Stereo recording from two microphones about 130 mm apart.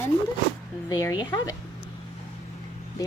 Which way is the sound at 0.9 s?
30° left (ahead or behind).